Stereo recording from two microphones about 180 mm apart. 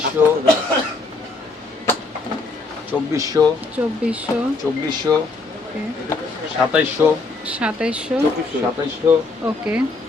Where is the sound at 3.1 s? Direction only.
20° right (ahead or behind).